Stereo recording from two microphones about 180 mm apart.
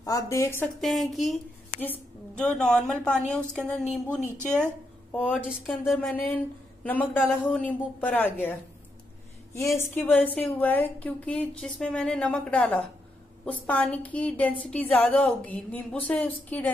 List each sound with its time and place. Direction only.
0.0 s a woman's voice: 15° left (ahead or behind)
0.7 s a woman's voice: centre (ahead or behind)